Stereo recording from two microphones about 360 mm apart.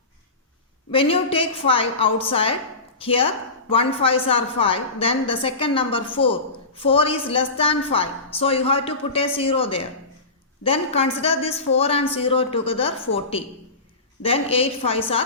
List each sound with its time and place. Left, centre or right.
0.9 s a woman's voice: centre